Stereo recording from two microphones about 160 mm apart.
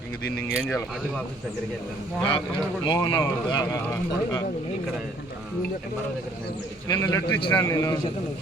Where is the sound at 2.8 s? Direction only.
25° left (ahead or behind).